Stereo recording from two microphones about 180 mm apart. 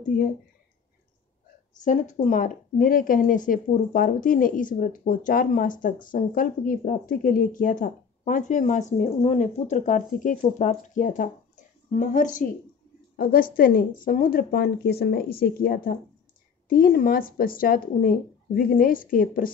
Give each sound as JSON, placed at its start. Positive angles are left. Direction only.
{"t": 0.1, "sound": "speech", "side_deg": 50}
{"t": 1.9, "sound": "a woman's voice", "side_deg": 45}